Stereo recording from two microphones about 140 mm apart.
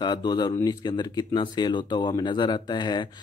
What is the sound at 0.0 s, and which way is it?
Speech, 30° left (ahead or behind).